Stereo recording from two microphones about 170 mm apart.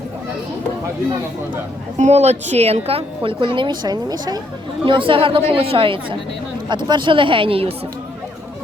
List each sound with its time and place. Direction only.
2.0 s a woman's voice: 40° right (ahead or behind)